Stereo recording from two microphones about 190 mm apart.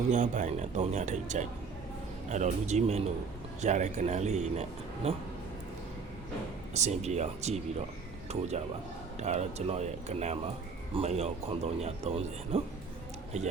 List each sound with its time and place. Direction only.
0.1 s speech: 40° right (ahead or behind)
6.7 s speech: 35° right (ahead or behind)